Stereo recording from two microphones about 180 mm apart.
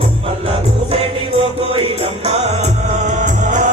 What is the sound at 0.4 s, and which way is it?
Music, 30° right (ahead or behind).